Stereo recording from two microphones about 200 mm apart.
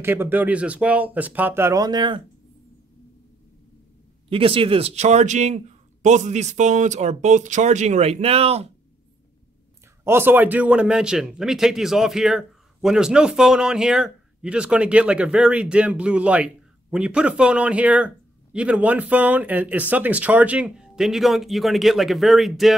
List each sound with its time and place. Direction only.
0.0 s speech: 10° right (ahead or behind)
4.3 s speech: 25° right (ahead or behind)
10.0 s a man's voice: 10° right (ahead or behind)